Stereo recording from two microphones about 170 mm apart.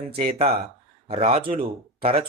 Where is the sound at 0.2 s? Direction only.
40° right (ahead or behind).